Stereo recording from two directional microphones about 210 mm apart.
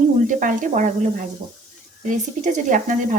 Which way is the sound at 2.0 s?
35° right (ahead or behind).